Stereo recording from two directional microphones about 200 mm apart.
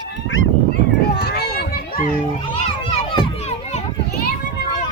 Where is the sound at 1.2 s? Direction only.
55° left (ahead or behind).